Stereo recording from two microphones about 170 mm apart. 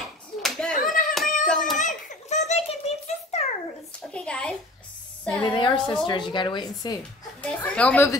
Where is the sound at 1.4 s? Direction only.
Centre (ahead or behind).